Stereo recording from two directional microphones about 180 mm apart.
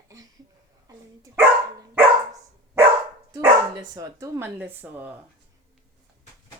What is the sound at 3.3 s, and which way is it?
Speech, 20° right (ahead or behind).